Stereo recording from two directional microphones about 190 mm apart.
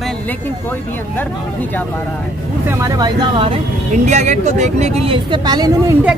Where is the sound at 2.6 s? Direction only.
20° right (ahead or behind).